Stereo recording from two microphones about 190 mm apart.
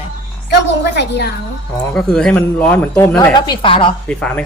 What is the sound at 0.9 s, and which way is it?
Speech, 60° left (ahead or behind).